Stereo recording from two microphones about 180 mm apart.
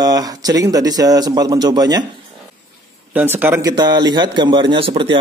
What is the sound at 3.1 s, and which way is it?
Speech, 10° right (ahead or behind).